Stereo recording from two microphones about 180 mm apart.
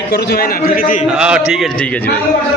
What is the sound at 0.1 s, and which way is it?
Speech, 60° left (ahead or behind).